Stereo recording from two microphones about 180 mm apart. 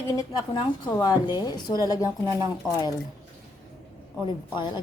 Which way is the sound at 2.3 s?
20° right (ahead or behind).